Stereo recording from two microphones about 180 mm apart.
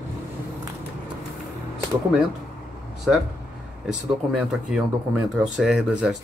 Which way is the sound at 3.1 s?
Centre (ahead or behind).